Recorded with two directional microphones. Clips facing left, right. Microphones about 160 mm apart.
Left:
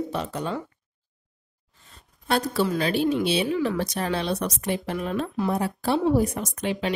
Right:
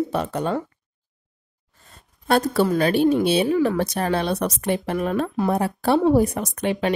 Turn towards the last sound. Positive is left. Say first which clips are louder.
# right 4 dB
turn(degrees=-55)  # may be behind; listen again after turning